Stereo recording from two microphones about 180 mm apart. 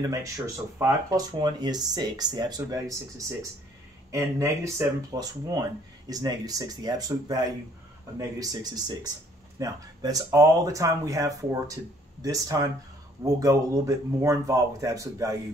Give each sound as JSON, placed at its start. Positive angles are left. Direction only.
{"t": 0.0, "sound": "speech", "side_deg": -20}
{"t": 4.1, "sound": "speech", "side_deg": -15}